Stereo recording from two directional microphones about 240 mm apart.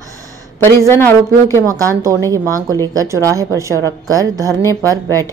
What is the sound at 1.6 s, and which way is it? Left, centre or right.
A woman's voice, centre.